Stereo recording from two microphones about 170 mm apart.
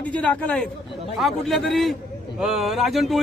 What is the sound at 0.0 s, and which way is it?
A man's voice, 10° left (ahead or behind).